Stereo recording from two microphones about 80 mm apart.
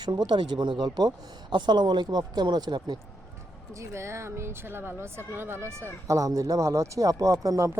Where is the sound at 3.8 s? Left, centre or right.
Right.